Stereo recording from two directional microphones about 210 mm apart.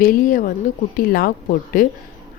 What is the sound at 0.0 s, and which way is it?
Speech, 40° left (ahead or behind).